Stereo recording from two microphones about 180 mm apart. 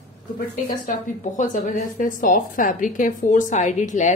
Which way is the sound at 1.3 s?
45° left (ahead or behind).